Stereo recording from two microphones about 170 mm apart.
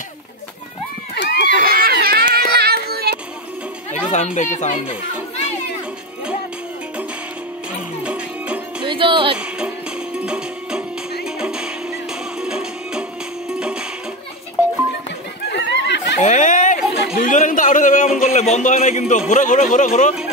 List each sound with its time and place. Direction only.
1.1 s a sound: 80° left
1.5 s child singing: 60° right (ahead or behind)
4.1 s a man's voice: 45° left (ahead or behind)
4.8 s music: 40° left (ahead or behind)
8.0 s music: 5° right (ahead or behind)
8.8 s music: 30° right (ahead or behind)
10.1 s music: 5° right (ahead or behind)
15.5 s a sound: 90° left
16.2 s a sound: 45° left (ahead or behind)
17.2 s a man's voice: 50° left (ahead or behind)